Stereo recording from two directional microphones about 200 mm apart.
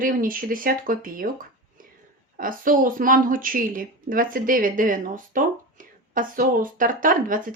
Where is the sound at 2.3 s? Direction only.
45° right (ahead or behind).